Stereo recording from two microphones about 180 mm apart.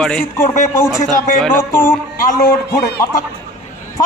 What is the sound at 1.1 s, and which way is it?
Speech, 45° left (ahead or behind).